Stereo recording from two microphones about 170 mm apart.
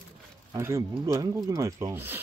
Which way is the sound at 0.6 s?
20° right (ahead or behind).